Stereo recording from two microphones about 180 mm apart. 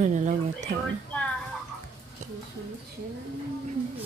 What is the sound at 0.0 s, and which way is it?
Speech, 40° right (ahead or behind).